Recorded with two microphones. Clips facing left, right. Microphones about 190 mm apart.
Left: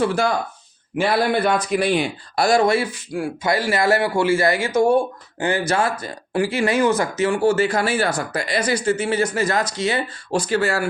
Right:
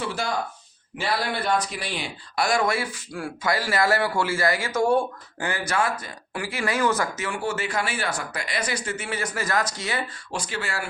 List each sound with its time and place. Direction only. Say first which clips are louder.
0.0 s speech: left 8 dB; 50° left (ahead or behind)
2.3 s speech: left 6 dB; 35° left (ahead or behind)
10.5 s speech: left 12 dB; 40° left (ahead or behind)